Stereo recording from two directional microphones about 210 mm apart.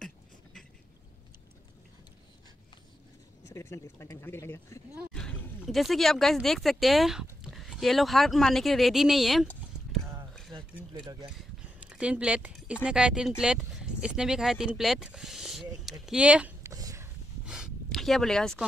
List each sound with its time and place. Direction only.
0.0 s beatboxing: centre (ahead or behind)
3.4 s speech: 15° left (ahead or behind)
5.1 s a sound: 5° left (ahead or behind)
5.6 s speech: centre (ahead or behind)
10.9 s speech: 20° right (ahead or behind)
11.9 s speech: 5° right (ahead or behind)
17.5 s a sound: centre (ahead or behind)